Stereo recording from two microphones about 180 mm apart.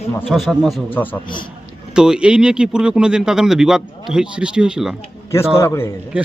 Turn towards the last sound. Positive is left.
turn(degrees=-10)  # may be behind; listen again after turning